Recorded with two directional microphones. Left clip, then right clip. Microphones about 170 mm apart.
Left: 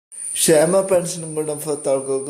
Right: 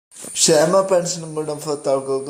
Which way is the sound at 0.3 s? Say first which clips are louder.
Even; centre (ahead or behind).